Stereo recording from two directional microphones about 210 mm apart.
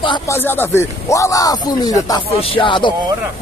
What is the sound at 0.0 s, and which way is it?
Speech, 20° left (ahead or behind).